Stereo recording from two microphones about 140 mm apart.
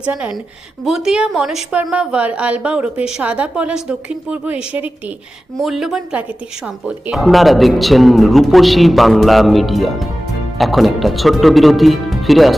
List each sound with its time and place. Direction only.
0.0 s a woman's voice: 10° right (ahead or behind)